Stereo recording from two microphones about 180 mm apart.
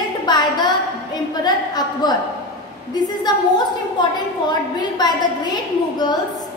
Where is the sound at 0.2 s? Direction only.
25° left (ahead or behind).